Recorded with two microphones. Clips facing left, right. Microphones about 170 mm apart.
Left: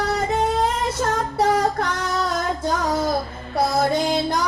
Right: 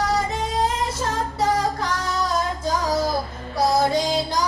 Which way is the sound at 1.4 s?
60° left (ahead or behind).